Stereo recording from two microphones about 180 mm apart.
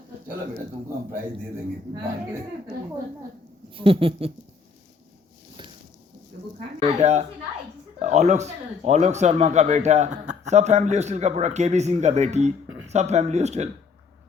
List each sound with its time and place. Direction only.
3.8 s speech: 30° right (ahead or behind)
6.7 s speech: 40° right (ahead or behind)